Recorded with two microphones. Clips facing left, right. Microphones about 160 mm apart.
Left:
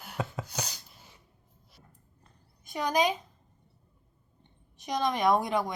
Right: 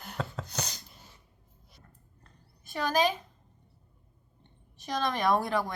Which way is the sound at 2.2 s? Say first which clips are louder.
Right 1 dB; 15° left (ahead or behind).